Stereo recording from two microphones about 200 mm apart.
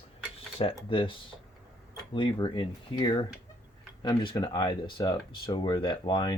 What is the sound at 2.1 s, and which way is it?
Speech, 25° left (ahead or behind).